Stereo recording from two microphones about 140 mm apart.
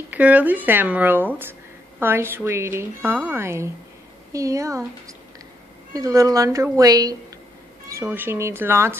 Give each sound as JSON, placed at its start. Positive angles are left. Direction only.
{"t": 0.1, "sound": "a woman's voice", "side_deg": -10}
{"t": 5.9, "sound": "a woman's voice", "side_deg": -25}
{"t": 7.9, "sound": "a woman's voice", "side_deg": -15}